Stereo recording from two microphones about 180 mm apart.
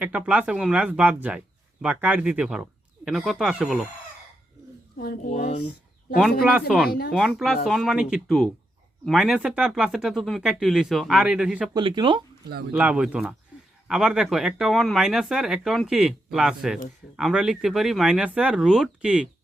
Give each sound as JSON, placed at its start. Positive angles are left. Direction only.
{"t": 0.0, "sound": "speech", "side_deg": -5}
{"t": 5.3, "sound": "speech", "side_deg": 35}
{"t": 5.5, "sound": "a sound", "side_deg": 65}
{"t": 6.4, "sound": "speech", "side_deg": -5}
{"t": 11.7, "sound": "speech", "side_deg": -25}
{"t": 12.7, "sound": "speech", "side_deg": -10}